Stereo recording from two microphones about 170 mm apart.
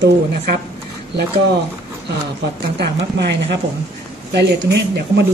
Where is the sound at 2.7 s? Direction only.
80° right.